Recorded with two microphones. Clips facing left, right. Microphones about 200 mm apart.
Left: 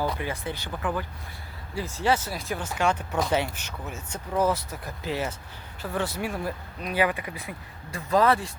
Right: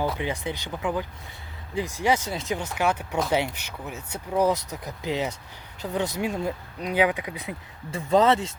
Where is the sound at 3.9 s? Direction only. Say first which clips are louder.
Right 2 dB; 65° right (ahead or behind).